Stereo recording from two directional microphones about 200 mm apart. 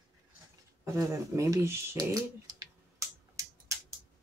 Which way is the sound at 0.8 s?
15° right (ahead or behind).